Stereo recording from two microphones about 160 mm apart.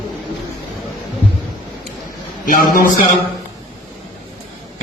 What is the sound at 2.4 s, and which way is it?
Speech, 60° left (ahead or behind).